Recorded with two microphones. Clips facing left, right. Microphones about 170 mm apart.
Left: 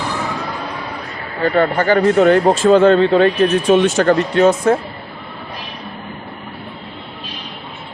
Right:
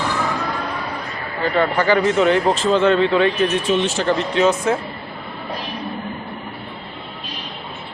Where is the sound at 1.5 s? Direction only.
50° left (ahead or behind).